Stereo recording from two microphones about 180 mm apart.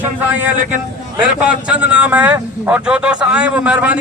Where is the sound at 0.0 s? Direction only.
10° right (ahead or behind).